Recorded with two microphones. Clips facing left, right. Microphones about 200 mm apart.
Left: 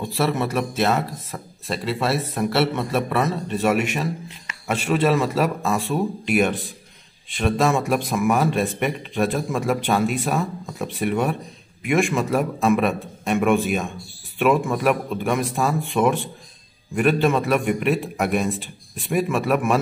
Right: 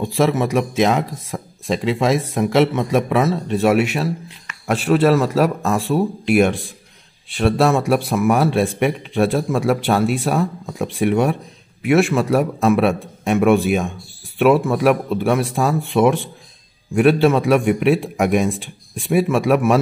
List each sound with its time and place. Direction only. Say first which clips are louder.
0.2 s a man's voice: right 5 dB; 10° right (ahead or behind)